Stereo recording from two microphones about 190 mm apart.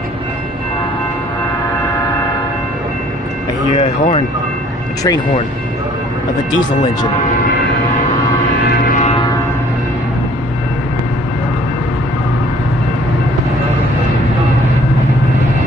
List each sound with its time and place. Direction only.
3.7 s speech: 35° left (ahead or behind)